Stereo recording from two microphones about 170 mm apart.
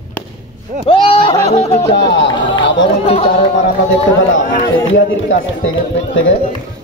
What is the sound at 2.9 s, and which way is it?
Speech, 35° left (ahead or behind).